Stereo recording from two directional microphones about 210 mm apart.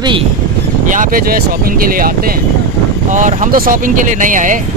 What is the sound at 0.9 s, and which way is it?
Speech, 40° right (ahead or behind).